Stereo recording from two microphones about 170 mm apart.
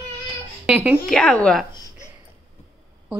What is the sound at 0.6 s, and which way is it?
Speech, 5° right (ahead or behind).